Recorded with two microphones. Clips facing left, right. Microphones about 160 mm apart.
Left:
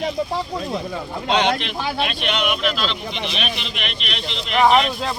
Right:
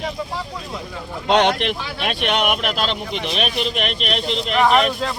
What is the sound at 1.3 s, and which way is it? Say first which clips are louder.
Speech: right 3 dB; 60° right (ahead or behind).